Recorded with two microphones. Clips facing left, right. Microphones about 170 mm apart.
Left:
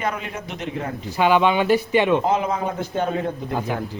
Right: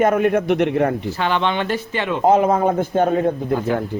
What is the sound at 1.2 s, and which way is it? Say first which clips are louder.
Speech: left 5 dB; 10° left (ahead or behind).